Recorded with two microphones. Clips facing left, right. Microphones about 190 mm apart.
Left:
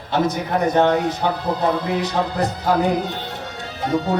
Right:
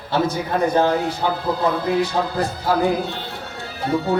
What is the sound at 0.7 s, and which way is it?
Speech, 20° left (ahead or behind).